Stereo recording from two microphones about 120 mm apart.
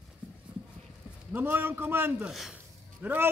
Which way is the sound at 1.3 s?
15° right (ahead or behind).